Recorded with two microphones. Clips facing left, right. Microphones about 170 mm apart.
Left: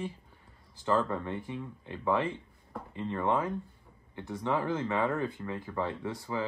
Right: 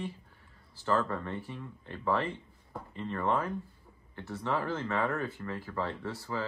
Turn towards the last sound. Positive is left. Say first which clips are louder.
# left 1 dB
turn(degrees=15)  # may be behind; listen again after turning